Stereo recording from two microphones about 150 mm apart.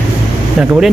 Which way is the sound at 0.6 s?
5° right (ahead or behind).